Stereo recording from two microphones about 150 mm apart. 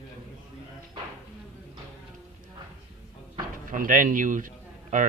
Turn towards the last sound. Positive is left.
turn(degrees=-60)  # may be behind; listen again after turning